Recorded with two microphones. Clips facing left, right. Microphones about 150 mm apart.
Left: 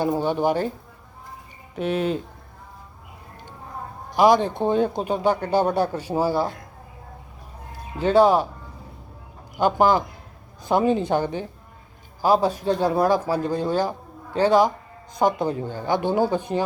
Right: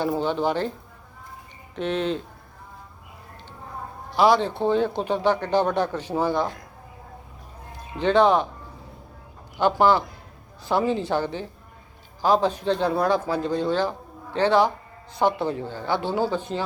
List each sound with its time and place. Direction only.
0.1 s speech: 15° left (ahead or behind)
1.7 s speech: 10° left (ahead or behind)
4.1 s speech: 15° left (ahead or behind)
7.9 s speech: 10° left (ahead or behind)
9.6 s a woman's voice: 15° left (ahead or behind)